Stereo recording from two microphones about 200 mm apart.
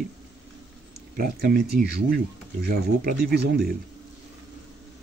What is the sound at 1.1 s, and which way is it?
Speech, 50° right (ahead or behind).